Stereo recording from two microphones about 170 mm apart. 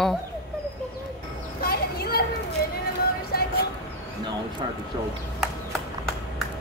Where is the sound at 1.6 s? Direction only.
65° left (ahead or behind).